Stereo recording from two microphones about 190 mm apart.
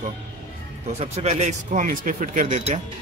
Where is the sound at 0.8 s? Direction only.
35° right (ahead or behind).